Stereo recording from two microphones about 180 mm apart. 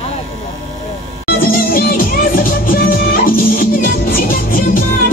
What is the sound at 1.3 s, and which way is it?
Music, 55° left (ahead or behind).